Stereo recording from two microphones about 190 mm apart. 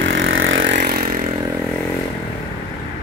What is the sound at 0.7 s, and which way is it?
Vehicle, 50° right (ahead or behind).